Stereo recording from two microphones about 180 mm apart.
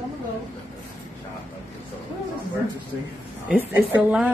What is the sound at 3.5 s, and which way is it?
Speech, 5° right (ahead or behind).